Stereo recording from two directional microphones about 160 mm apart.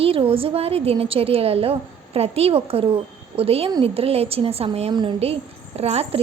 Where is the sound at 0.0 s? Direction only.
35° right (ahead or behind).